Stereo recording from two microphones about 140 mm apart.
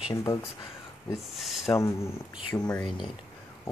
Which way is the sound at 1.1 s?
Centre (ahead or behind).